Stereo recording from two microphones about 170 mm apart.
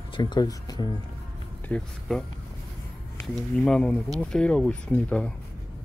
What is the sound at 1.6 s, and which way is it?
Speech, 5° left (ahead or behind).